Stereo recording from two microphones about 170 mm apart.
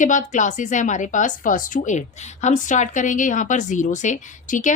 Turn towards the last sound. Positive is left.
turn(degrees=50)  # may be behind; listen again after turning